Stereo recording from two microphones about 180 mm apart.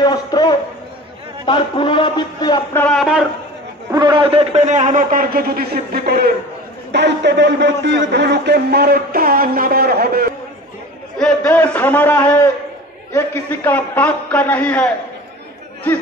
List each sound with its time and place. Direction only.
0.0 s a sound: 20° left (ahead or behind)
1.4 s a man's voice: 30° left (ahead or behind)
2.7 s a man's voice: 5° left (ahead or behind)
3.9 s a man's voice: 25° right (ahead or behind); by 6.3 s 60° right (ahead or behind)
6.9 s a man's voice: 75° right (ahead or behind)
11.4 s a man's voice: 10° left (ahead or behind)